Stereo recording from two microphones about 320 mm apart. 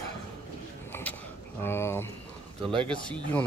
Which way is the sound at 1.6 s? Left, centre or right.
Centre.